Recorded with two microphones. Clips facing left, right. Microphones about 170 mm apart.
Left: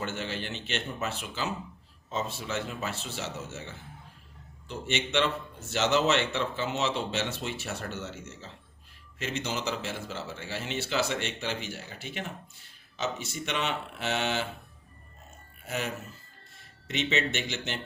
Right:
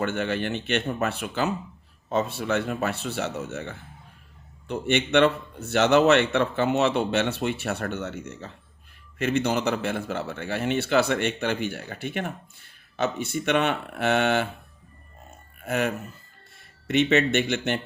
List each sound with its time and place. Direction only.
0.0 s a man's voice: 60° right (ahead or behind)
15.6 s a man's voice: 60° right (ahead or behind)